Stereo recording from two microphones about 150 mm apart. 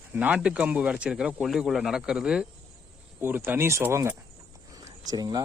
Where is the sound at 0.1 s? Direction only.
10° right (ahead or behind).